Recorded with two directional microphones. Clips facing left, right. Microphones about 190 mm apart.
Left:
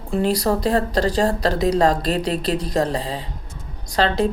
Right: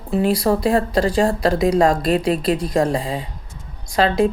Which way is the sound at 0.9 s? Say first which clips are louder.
Right 2 dB; 40° left (ahead or behind).